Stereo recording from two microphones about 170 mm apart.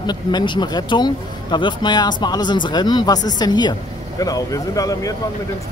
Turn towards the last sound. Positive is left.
turn(degrees=20)  # may be behind; listen again after turning